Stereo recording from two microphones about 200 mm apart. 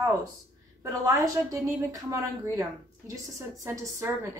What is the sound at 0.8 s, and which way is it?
A woman's voice, 15° right (ahead or behind).